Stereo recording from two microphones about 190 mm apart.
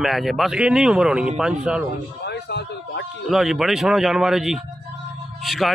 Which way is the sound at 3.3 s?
Centre (ahead or behind).